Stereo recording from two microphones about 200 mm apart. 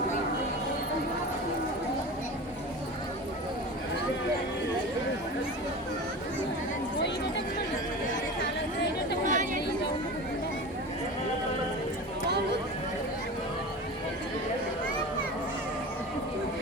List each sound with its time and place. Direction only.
9.2 s chatter: 40° right (ahead or behind)